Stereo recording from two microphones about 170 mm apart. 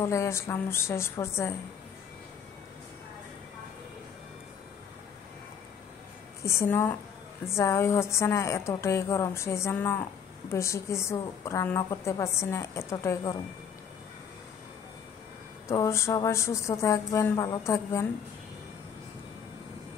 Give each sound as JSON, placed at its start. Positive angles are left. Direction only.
{"t": 0.0, "sound": "a woman's voice", "side_deg": 15}
{"t": 6.4, "sound": "a woman's voice", "side_deg": 15}
{"t": 15.7, "sound": "a woman's voice", "side_deg": 15}